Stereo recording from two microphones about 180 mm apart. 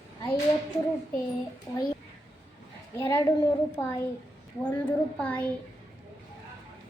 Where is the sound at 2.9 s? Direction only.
15° left (ahead or behind).